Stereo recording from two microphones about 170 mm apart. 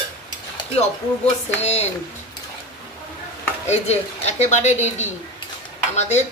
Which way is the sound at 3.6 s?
40° left (ahead or behind).